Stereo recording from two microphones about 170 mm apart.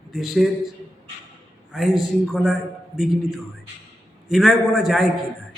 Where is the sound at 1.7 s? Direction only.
Centre (ahead or behind).